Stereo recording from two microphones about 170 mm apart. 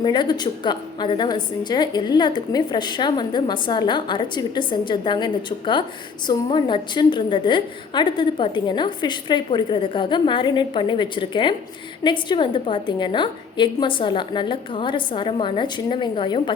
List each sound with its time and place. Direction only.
0.0 s a woman's voice: 25° left (ahead or behind)